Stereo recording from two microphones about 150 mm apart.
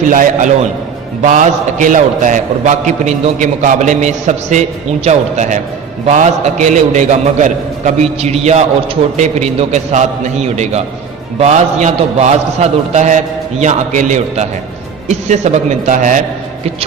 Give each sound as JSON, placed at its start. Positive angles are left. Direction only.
{"t": 0.1, "sound": "a man's voice", "side_deg": -60}